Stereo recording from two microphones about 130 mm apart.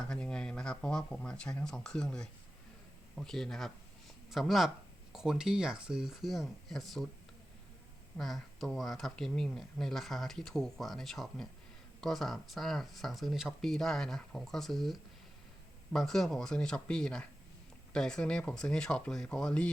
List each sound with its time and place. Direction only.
0.0 s speech: 5° left (ahead or behind)
8.2 s speech: 5° left (ahead or behind)